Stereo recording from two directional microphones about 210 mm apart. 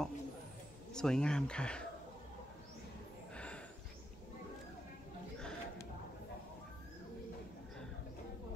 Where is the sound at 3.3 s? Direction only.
5° left (ahead or behind).